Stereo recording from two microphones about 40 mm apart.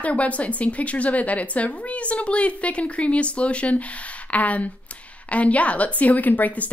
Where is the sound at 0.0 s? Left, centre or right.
Left.